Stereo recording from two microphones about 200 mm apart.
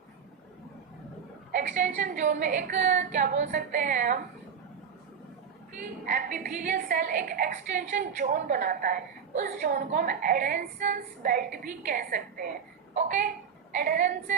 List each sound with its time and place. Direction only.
1.5 s a woman's voice: 40° right (ahead or behind)
5.8 s a woman's voice: 40° right (ahead or behind)
12.9 s a sound: 35° right (ahead or behind)
13.7 s a woman's voice: 40° right (ahead or behind)